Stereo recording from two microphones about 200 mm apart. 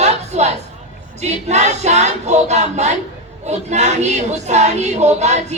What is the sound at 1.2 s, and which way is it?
Music, 35° right (ahead or behind).